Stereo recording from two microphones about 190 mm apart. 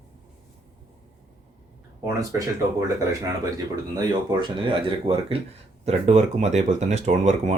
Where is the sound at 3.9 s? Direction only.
20° right (ahead or behind).